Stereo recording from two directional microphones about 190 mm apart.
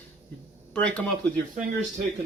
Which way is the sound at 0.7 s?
5° left (ahead or behind).